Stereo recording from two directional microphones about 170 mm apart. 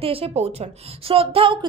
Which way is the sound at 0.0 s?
35° right (ahead or behind).